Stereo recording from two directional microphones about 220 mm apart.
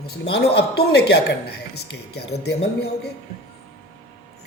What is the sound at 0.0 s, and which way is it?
Speech, 50° left (ahead or behind).